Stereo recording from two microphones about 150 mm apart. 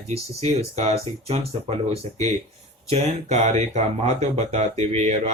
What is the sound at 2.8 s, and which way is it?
Speech, 50° right (ahead or behind).